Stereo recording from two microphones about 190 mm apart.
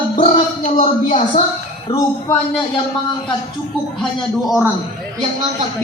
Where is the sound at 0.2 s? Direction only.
35° left (ahead or behind).